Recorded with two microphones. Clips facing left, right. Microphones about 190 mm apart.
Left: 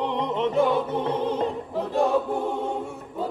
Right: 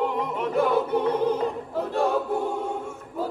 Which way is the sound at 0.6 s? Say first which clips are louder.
Right 2 dB; centre (ahead or behind).